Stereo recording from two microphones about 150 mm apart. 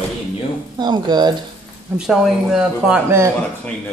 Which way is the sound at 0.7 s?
30° right (ahead or behind).